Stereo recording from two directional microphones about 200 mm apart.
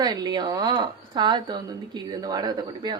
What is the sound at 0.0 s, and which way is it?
A woman's voice, 20° right (ahead or behind).